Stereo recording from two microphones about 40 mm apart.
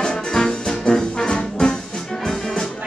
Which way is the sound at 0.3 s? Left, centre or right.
Centre.